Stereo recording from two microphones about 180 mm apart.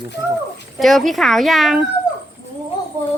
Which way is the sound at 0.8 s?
Centre (ahead or behind).